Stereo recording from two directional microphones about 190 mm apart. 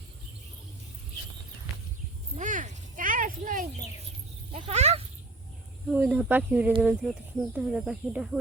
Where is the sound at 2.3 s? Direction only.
40° right (ahead or behind).